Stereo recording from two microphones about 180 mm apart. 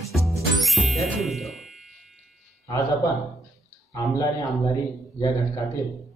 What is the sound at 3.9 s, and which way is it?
Speech, 20° left (ahead or behind).